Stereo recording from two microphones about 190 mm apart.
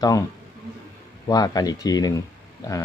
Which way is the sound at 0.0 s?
20° left (ahead or behind).